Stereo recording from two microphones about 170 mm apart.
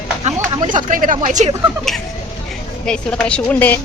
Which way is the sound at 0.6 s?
50° right (ahead or behind).